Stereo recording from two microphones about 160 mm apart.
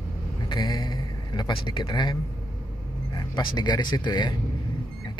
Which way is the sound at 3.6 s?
25° left (ahead or behind).